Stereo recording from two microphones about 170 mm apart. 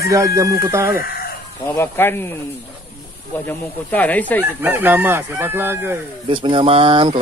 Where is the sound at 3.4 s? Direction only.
10° left (ahead or behind).